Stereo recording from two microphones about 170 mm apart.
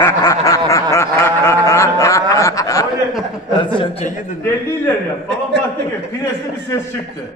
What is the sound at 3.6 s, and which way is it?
Speech, 35° left (ahead or behind).